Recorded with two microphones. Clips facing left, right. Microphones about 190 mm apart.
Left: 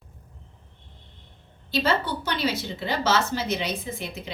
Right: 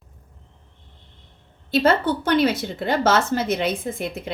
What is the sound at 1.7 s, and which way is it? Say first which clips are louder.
Speech: right 6 dB; 50° right (ahead or behind).